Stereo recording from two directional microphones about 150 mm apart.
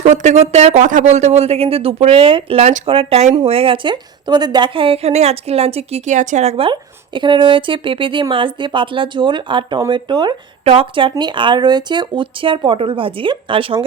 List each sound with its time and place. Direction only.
0.0 s speech: 55° right (ahead or behind); by 13.8 s 35° right (ahead or behind)